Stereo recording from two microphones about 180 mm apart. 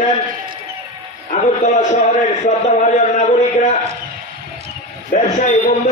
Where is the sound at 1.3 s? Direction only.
40° left (ahead or behind).